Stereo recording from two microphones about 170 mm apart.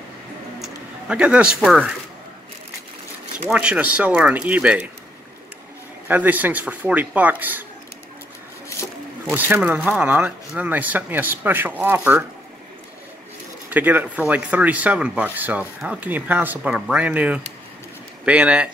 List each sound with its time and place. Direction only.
0.6 s speech: 5° right (ahead or behind)
3.4 s speech: 5° right (ahead or behind)
6.0 s speech: 10° right (ahead or behind)
9.2 s speech: 10° right (ahead or behind)
13.7 s speech: 10° right (ahead or behind)